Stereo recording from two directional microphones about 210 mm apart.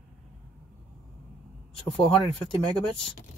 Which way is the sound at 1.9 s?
25° left (ahead or behind).